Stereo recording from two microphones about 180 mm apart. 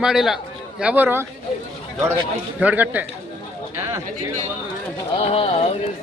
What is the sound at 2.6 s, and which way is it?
Speech, 10° right (ahead or behind).